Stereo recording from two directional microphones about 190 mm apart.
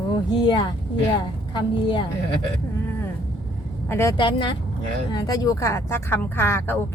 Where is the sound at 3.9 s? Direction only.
15° left (ahead or behind).